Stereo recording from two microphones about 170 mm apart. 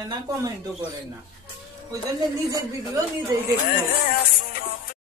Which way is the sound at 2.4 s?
20° right (ahead or behind).